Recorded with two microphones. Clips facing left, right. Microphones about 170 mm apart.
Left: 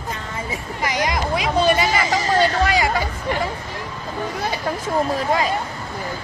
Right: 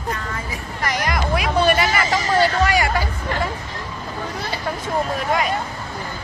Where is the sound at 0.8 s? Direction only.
15° left (ahead or behind).